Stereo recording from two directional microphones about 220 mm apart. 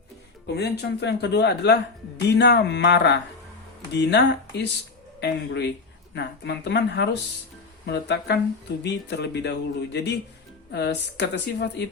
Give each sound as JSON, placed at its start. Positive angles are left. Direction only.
{"t": 0.4, "sound": "speech", "side_deg": 50}